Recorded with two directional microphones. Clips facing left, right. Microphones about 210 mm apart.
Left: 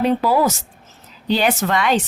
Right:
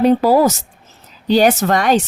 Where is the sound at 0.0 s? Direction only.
40° right (ahead or behind).